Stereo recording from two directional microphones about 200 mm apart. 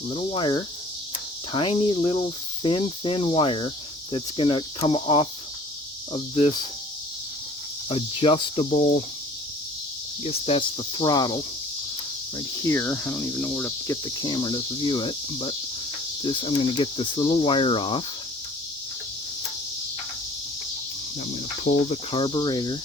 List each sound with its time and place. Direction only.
0.1 s speech: 25° left (ahead or behind)
7.9 s speech: 30° left (ahead or behind)
10.2 s speech: 30° left (ahead or behind)
12.6 s speech: 15° left (ahead or behind)
21.6 s speech: 35° left (ahead or behind)